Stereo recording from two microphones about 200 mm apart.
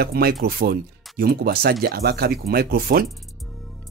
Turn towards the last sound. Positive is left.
turn(degrees=-50)  # may be behind; listen again after turning